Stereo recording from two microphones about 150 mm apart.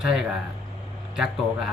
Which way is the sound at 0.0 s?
5° right (ahead or behind).